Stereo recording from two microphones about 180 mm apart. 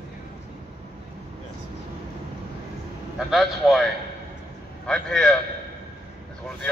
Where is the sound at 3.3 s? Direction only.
Centre (ahead or behind).